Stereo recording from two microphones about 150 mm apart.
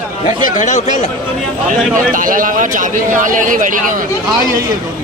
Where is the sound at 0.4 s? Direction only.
60° left (ahead or behind).